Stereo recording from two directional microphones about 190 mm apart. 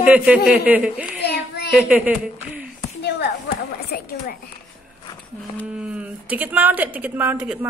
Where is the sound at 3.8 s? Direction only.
50° left (ahead or behind).